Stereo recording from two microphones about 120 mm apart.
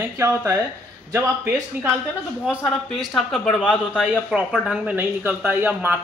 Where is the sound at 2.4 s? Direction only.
5° left (ahead or behind).